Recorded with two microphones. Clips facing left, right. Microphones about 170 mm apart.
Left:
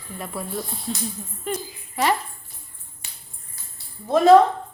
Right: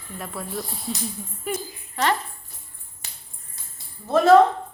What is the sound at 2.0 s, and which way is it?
Speech, 10° left (ahead or behind).